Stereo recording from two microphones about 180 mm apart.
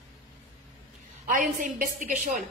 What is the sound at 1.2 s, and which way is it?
A woman's voice, 50° right (ahead or behind).